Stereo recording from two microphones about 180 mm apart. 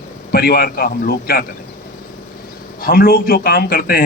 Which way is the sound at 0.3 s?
55° left (ahead or behind).